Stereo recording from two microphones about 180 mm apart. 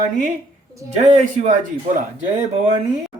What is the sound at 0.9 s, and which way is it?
Speech, 40° right (ahead or behind).